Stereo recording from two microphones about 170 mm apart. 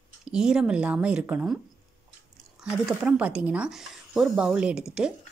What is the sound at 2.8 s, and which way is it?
Speech, 5° right (ahead or behind).